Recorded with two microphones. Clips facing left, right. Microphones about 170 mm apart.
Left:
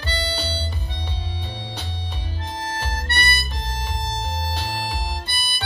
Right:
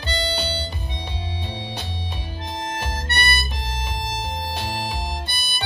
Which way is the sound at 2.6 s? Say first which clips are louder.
Even; 15° right (ahead or behind).